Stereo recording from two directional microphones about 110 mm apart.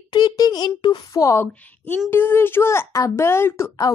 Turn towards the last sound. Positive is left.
turn(degrees=25)  # may be behind; listen again after turning